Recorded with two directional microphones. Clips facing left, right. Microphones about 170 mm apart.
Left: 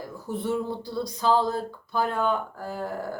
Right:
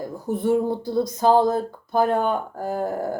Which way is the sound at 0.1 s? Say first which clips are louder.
Right 7 dB; 50° right (ahead or behind).